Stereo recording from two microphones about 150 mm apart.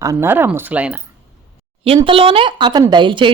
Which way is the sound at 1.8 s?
35° right (ahead or behind).